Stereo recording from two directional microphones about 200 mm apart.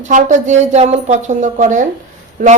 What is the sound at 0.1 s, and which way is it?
A woman's voice, 40° right (ahead or behind).